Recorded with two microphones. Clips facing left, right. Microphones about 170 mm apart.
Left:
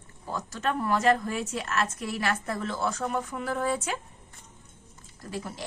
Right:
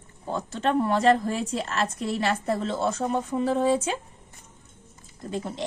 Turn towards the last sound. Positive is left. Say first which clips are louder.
# right 5 dB
turn(degrees=-25)  # may be behind; listen again after turning